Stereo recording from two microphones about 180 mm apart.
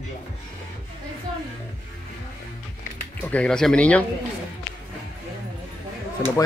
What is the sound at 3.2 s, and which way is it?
Speech, 5° left (ahead or behind).